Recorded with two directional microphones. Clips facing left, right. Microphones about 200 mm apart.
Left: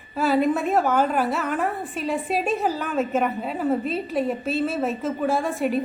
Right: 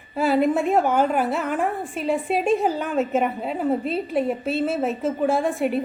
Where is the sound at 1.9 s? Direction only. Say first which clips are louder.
Right 3 dB; 60° right (ahead or behind).